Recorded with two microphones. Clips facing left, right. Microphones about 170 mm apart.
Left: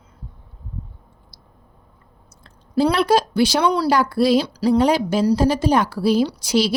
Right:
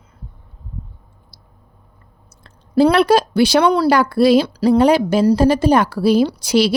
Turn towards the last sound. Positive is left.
turn(degrees=-65)  # may be behind; listen again after turning